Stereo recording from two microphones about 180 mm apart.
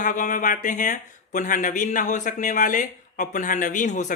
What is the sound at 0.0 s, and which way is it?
Speech, 45° left (ahead or behind).